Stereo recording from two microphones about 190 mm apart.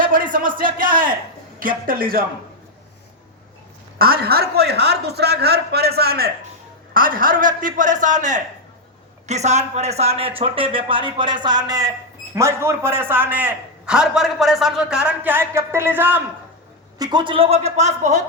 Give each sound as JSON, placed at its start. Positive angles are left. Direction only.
{"t": 0.0, "sound": "a man's voice", "side_deg": -45}
{"t": 3.9, "sound": "a man's voice", "side_deg": -50}
{"t": 17.0, "sound": "a man's voice", "side_deg": -20}